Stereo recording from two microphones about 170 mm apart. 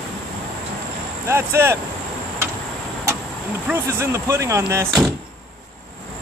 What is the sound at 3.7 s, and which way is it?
Speech, 15° right (ahead or behind).